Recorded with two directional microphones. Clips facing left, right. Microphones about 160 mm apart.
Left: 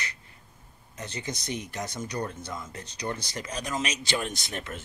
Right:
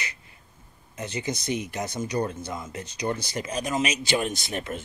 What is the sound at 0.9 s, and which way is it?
Speech, 5° right (ahead or behind).